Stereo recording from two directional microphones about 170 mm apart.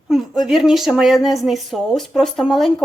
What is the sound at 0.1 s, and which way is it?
Speech, centre (ahead or behind).